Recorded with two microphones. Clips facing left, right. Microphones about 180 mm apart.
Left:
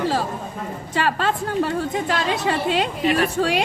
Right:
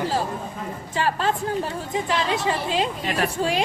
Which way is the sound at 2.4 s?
70° left (ahead or behind).